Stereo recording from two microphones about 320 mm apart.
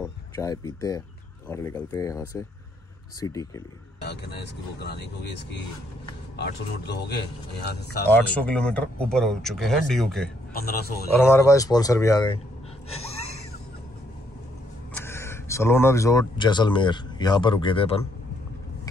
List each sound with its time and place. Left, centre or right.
0.4 s speech: centre
4.0 s speech: left
6.3 s speech: left
8.1 s speech: centre
10.5 s a man's voice: left
11.1 s speech: centre
12.9 s a sound: centre
15.0 s speech: centre